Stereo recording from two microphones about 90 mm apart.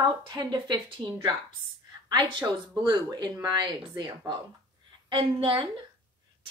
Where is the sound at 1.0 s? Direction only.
60° right (ahead or behind).